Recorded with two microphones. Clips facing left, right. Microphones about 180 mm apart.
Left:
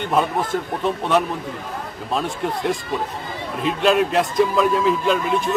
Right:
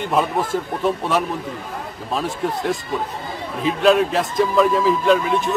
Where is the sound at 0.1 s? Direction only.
5° right (ahead or behind).